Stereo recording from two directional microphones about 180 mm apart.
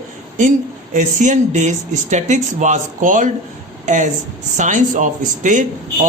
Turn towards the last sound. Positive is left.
turn(degrees=-45)  # may be behind; listen again after turning